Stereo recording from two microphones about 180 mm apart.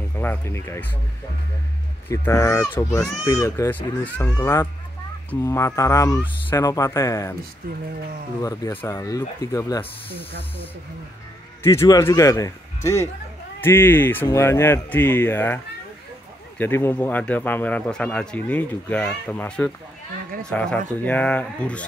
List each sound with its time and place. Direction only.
0.2 s speech: 10° left (ahead or behind)
2.0 s speech: 15° left (ahead or behind)
8.4 s speech: 20° left (ahead or behind)
11.6 s speech: 15° left (ahead or behind)